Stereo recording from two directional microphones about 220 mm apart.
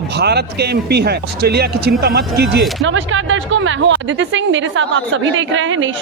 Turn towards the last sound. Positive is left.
turn(degrees=-60)  # may be behind; listen again after turning